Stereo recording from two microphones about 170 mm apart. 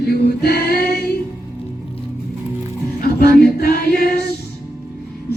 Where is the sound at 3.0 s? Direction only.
65° left (ahead or behind).